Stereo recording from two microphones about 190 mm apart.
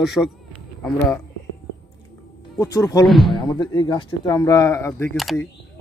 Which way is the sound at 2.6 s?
20° left (ahead or behind).